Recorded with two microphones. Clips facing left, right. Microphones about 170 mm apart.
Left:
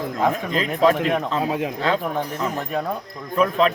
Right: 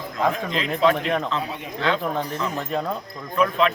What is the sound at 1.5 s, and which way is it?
Speech, 90° left.